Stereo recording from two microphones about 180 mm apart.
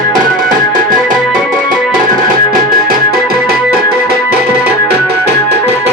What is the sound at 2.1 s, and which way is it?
Music, 55° right (ahead or behind).